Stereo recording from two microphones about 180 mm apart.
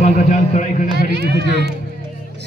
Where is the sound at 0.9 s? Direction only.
65° right (ahead or behind).